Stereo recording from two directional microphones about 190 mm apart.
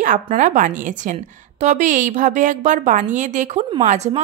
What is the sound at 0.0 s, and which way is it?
Speech, 45° right (ahead or behind).